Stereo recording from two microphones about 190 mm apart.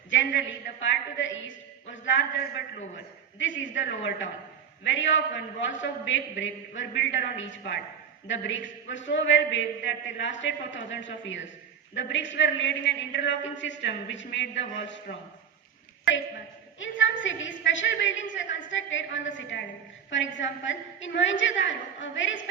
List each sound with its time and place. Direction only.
0.1 s a man's voice: 75° left (ahead or behind)
16.8 s a woman's voice: 80° left